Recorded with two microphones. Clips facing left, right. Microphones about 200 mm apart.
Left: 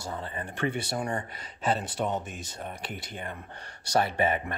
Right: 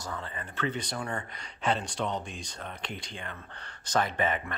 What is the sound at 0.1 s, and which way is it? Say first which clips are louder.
Speech: left 4 dB; 30° left (ahead or behind).